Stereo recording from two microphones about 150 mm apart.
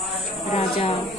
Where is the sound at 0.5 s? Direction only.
45° left (ahead or behind).